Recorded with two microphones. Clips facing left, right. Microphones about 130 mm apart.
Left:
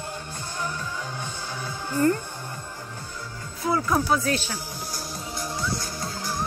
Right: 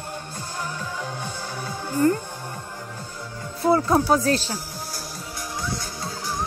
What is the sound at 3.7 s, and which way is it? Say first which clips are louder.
Speech: right 5 dB; 30° right (ahead or behind).